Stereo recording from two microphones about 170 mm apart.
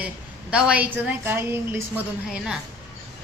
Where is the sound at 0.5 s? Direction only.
10° right (ahead or behind).